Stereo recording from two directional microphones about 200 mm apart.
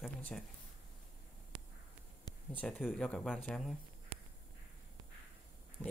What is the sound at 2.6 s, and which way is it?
Speech, centre (ahead or behind).